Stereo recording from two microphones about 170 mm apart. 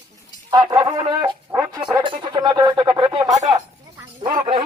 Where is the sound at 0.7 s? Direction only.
25° right (ahead or behind).